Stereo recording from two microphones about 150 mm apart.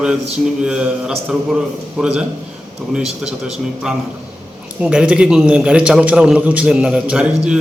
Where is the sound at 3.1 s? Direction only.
45° right (ahead or behind).